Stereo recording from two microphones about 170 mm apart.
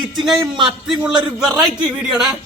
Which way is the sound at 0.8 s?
5° right (ahead or behind).